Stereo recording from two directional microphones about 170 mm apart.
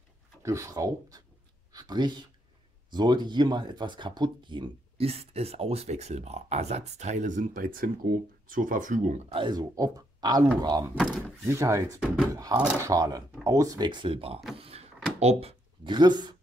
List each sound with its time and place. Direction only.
0.4 s speech: 20° right (ahead or behind); by 9.4 s 40° right (ahead or behind)
9.4 s speech: 25° right (ahead or behind)
11.0 s speech: centre (ahead or behind)
11.5 s speech: 15° right (ahead or behind); by 14.4 s 35° right (ahead or behind)
14.6 s a sound: 35° right (ahead or behind)
15.1 s speech: 35° right (ahead or behind)